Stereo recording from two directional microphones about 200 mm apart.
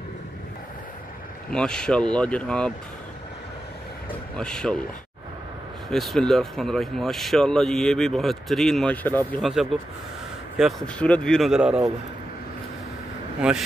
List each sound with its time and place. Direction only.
1.5 s speech: 5° left (ahead or behind)
4.4 s speech: 5° left (ahead or behind)
5.9 s speech: centre (ahead or behind)
13.4 s speech: 5° right (ahead or behind)